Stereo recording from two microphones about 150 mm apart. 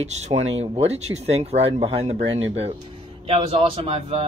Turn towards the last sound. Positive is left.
turn(degrees=-40)  # may be behind; listen again after turning